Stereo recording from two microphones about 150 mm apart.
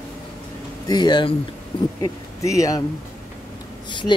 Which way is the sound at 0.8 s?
30° left (ahead or behind).